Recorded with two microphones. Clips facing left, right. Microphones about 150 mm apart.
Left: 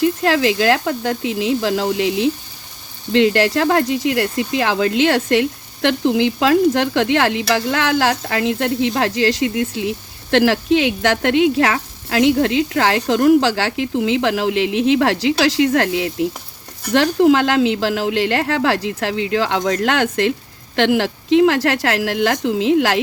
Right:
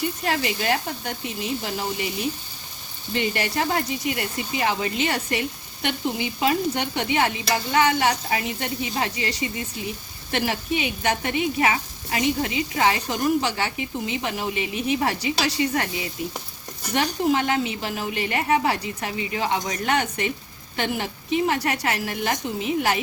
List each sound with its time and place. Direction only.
0.0 s speech: 90° left